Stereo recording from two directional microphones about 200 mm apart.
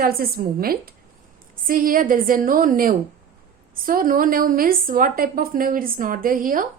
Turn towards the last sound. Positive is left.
turn(degrees=-45)  # may be behind; listen again after turning